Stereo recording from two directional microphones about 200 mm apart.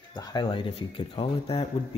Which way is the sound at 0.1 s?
20° left (ahead or behind).